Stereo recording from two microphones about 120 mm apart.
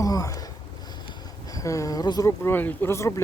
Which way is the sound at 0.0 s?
30° left (ahead or behind).